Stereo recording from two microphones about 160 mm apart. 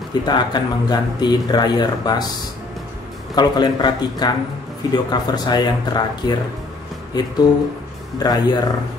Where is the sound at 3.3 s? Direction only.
25° left (ahead or behind).